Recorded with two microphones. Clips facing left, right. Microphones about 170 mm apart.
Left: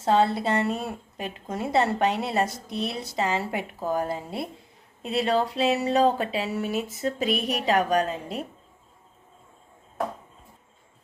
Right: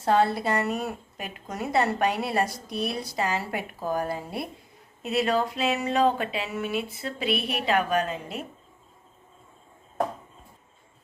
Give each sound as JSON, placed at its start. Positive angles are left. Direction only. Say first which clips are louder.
{"t": 0.0, "sound": "a woman's voice", "louder": "left 1 dB", "side_deg": 20}